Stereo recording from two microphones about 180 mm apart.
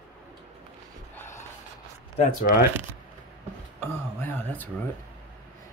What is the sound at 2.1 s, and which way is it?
Speech, 45° left (ahead or behind).